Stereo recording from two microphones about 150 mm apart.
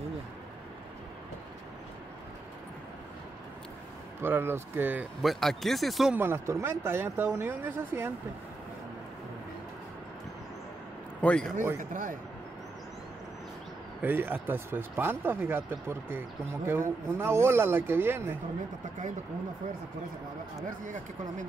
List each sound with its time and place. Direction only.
4.2 s speech: 15° right (ahead or behind)
5.2 s speech: centre (ahead or behind)
6.1 s speech: 15° right (ahead or behind)
11.1 s a man's voice: 5° left (ahead or behind)
11.8 s speech: 60° right (ahead or behind)
14.0 s speech: 15° right (ahead or behind)
20.6 s speech: 60° right (ahead or behind)